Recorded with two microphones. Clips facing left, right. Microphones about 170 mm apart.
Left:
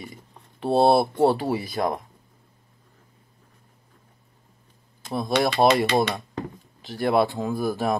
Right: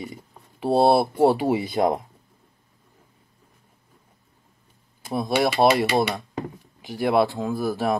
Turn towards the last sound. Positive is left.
turn(degrees=0)  # may be behind; listen again after turning